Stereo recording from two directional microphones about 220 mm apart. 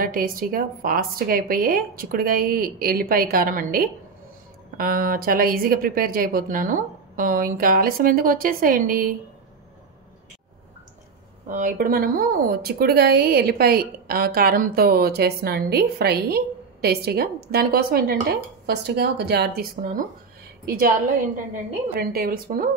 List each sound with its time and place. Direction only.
0.0 s a woman's voice: 40° right (ahead or behind)
11.4 s a woman's voice: 35° right (ahead or behind)
21.9 s a woman's voice: 45° right (ahead or behind)